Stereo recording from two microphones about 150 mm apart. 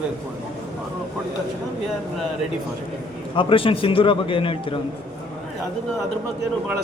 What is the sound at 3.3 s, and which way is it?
A man's voice, 35° left (ahead or behind).